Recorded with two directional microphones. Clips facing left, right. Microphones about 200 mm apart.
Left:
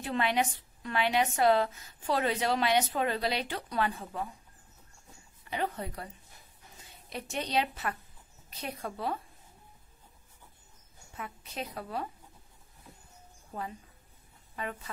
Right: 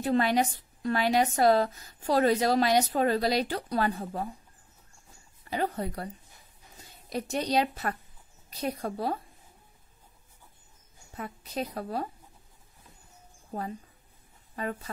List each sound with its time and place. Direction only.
0.0 s a woman's voice: 40° right (ahead or behind)
5.4 s a woman's voice: 40° right (ahead or behind)
11.1 s a woman's voice: 35° right (ahead or behind)
13.5 s speech: 40° right (ahead or behind)